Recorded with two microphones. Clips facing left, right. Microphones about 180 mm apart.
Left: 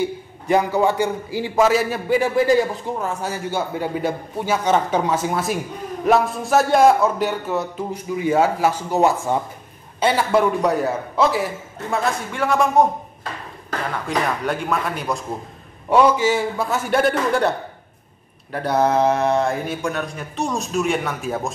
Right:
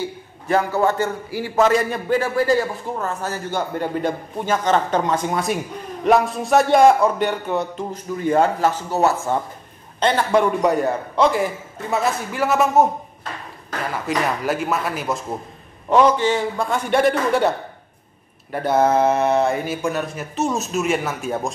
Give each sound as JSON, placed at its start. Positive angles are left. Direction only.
{"t": 0.0, "sound": "a man's voice", "side_deg": 15}
{"t": 13.9, "sound": "speech", "side_deg": -5}
{"t": 15.9, "sound": "speech", "side_deg": 10}